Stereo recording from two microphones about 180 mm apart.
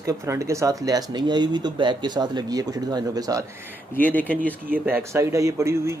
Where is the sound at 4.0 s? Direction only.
10° left (ahead or behind).